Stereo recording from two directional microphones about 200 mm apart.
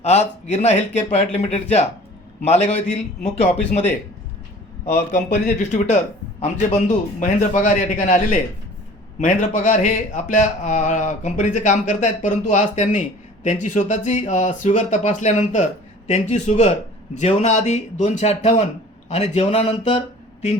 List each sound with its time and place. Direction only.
0.0 s speech: 35° left (ahead or behind)
4.9 s speech: 40° left (ahead or behind)